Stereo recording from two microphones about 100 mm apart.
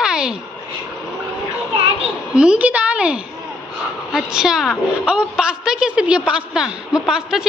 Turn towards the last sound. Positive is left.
turn(degrees=-5)  # may be behind; listen again after turning